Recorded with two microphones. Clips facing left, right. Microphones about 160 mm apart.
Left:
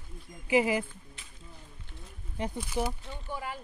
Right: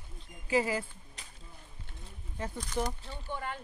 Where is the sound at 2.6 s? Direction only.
5° left (ahead or behind).